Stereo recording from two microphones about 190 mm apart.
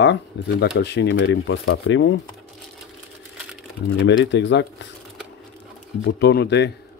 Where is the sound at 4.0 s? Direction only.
70° left (ahead or behind).